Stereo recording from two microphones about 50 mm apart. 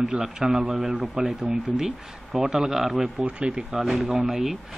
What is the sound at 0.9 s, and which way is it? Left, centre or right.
Speech, right.